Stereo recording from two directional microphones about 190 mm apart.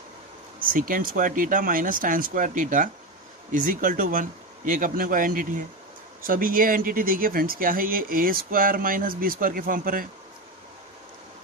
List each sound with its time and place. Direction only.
0.7 s speech: 45° right (ahead or behind)